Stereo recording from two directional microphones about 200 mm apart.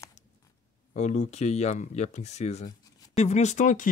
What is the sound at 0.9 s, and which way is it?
Speech, 35° left (ahead or behind).